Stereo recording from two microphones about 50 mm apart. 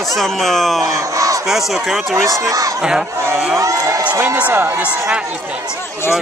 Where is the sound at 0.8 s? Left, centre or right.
Right.